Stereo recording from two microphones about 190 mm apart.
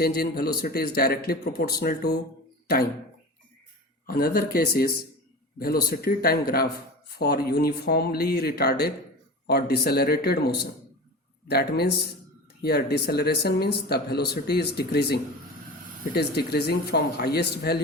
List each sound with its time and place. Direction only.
0.0 s speech: 55° left (ahead or behind)
4.0 s a man's voice: 50° left (ahead or behind)